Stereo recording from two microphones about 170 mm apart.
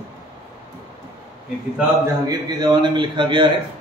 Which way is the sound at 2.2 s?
25° right (ahead or behind).